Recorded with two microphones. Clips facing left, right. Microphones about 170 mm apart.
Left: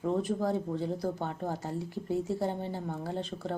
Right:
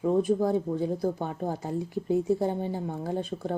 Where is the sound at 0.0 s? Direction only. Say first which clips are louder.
Right 6 dB; 15° right (ahead or behind).